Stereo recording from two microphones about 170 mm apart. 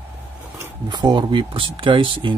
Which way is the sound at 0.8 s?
25° right (ahead or behind).